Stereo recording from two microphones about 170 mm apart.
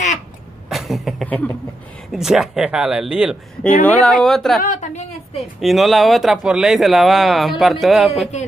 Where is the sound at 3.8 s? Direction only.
5° left (ahead or behind).